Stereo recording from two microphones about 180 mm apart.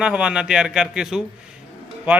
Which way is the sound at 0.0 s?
5° right (ahead or behind).